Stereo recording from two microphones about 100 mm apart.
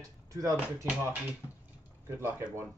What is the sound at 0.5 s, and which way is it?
Speech, 10° right (ahead or behind).